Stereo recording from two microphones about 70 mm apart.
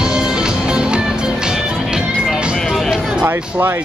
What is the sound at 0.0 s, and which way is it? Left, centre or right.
Music, centre.